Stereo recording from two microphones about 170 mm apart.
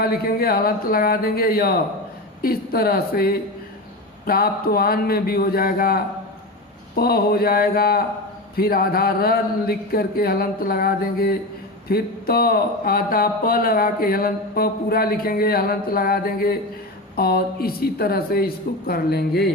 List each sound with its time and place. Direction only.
0.0 s speech: 60° left (ahead or behind)